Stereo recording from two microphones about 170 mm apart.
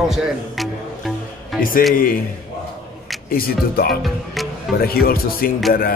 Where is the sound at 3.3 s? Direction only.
60° left (ahead or behind).